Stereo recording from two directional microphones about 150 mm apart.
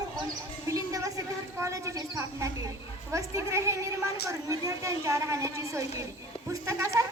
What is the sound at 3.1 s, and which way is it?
A woman's voice, 20° right (ahead or behind).